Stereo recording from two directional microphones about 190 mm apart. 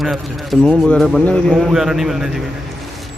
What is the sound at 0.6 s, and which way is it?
A man's voice, centre (ahead or behind).